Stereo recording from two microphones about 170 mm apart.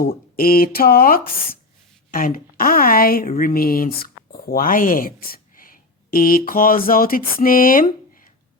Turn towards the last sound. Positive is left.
turn(degrees=55)  # may be behind; listen again after turning